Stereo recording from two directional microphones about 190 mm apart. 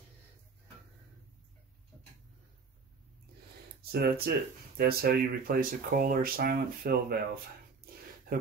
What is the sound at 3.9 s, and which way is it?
Speech, 55° right (ahead or behind).